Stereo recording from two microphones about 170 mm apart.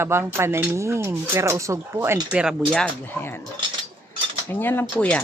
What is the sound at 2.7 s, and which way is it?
Speech, 10° left (ahead or behind).